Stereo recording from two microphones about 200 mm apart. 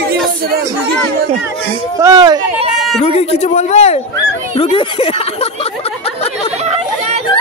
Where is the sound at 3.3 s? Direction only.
35° left (ahead or behind).